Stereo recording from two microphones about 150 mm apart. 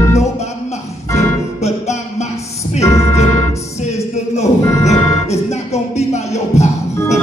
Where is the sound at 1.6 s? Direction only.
45° left (ahead or behind).